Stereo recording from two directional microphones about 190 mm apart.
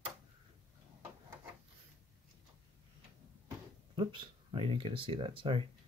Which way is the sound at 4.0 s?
25° right (ahead or behind).